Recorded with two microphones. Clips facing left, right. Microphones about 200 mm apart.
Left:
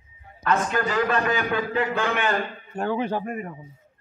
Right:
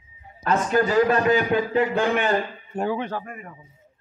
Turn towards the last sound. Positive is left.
turn(degrees=20)  # may be behind; listen again after turning